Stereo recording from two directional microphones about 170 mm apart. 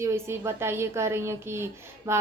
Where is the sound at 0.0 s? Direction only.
15° right (ahead or behind).